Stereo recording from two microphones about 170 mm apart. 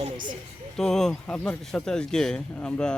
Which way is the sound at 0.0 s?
25° right (ahead or behind).